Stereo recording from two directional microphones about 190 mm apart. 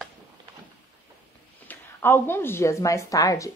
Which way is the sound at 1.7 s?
10° left (ahead or behind).